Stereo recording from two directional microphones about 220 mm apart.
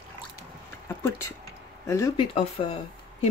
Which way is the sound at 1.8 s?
15° left (ahead or behind).